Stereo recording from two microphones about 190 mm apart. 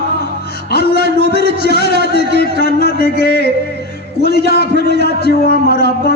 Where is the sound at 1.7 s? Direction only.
55° left (ahead or behind).